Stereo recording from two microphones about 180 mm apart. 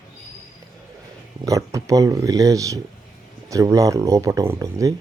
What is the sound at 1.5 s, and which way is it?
Speech, 20° right (ahead or behind).